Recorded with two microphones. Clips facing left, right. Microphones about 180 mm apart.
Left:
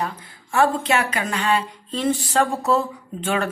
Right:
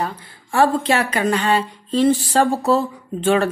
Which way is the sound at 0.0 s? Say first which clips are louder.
Right 2 dB; 35° right (ahead or behind).